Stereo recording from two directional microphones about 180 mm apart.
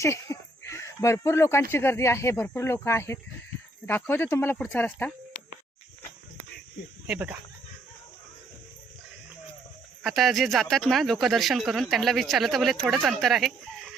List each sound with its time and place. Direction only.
0.0 s a sound: 15° left (ahead or behind)
1.7 s speech: 15° left (ahead or behind)
7.1 s speech: 10° right (ahead or behind)
10.0 s speech: centre (ahead or behind)